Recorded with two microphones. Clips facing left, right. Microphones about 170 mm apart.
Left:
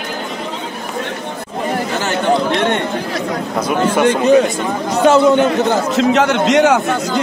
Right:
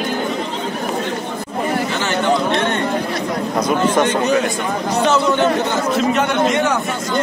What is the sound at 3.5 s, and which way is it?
Speech, 10° left (ahead or behind).